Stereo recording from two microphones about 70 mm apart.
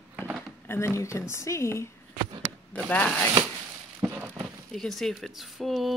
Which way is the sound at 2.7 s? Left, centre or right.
Left.